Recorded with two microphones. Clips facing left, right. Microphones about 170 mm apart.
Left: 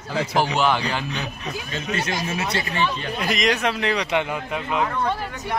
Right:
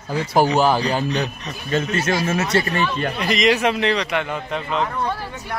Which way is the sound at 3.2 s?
Centre (ahead or behind).